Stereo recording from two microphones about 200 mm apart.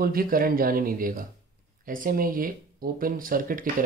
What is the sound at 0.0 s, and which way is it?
Speech, 45° right (ahead or behind).